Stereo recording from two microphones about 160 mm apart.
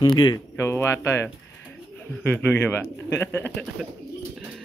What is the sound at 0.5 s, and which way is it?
Speech, 15° left (ahead or behind).